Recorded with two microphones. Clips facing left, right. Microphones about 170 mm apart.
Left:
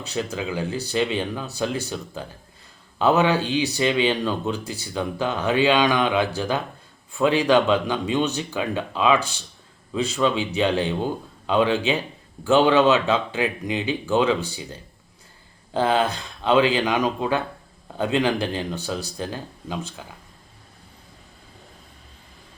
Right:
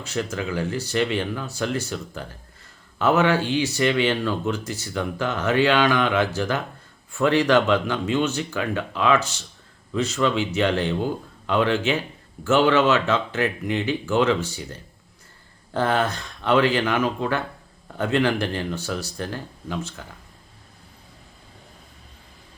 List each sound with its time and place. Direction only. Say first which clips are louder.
0.0 s speech: even; 15° left (ahead or behind)